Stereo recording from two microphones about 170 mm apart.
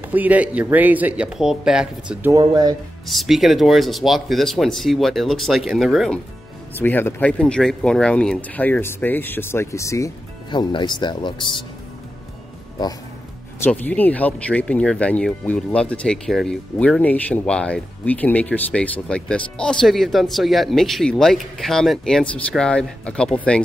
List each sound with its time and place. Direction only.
0.1 s speech: 10° right (ahead or behind)
2.3 s speech: 25° right (ahead or behind)
3.1 s speech: centre (ahead or behind)
6.8 s speech: 10° left (ahead or behind); by 11.5 s 30° left (ahead or behind)
13.6 s speech: 10° left (ahead or behind)